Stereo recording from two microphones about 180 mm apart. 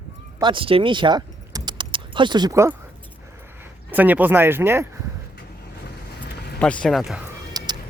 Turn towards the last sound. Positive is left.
turn(degrees=-25)  # may be behind; listen again after turning